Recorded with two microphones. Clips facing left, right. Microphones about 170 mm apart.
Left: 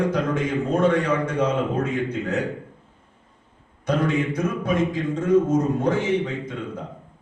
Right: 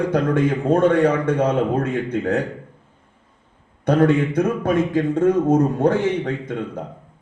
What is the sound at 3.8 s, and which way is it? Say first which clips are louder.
A man's voice: right 6 dB; 60° right (ahead or behind).